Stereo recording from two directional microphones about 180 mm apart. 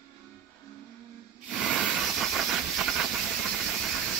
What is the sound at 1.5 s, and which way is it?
Hiss, centre (ahead or behind).